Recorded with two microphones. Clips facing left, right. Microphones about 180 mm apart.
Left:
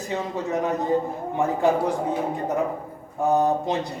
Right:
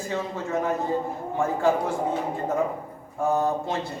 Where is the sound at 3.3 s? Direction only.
20° left (ahead or behind).